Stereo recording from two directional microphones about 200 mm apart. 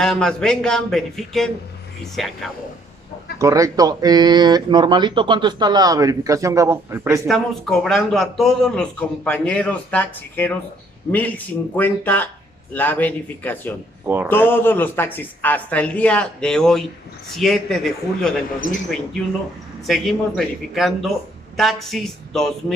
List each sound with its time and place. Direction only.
0.0 s a man's voice: 5° left (ahead or behind)
3.3 s speech: 15° right (ahead or behind)
7.2 s a man's voice: centre (ahead or behind)
14.0 s speech: 10° right (ahead or behind)
14.5 s a man's voice: 10° left (ahead or behind)
19.9 s a man's voice: centre (ahead or behind)